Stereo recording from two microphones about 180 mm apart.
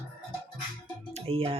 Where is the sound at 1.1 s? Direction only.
30° right (ahead or behind).